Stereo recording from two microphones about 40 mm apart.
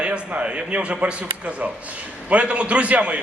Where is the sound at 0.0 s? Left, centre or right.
Right.